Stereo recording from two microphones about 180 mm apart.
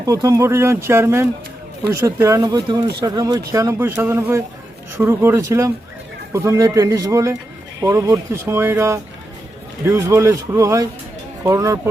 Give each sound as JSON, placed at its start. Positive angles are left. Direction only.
{"t": 0.0, "sound": "speech", "side_deg": -20}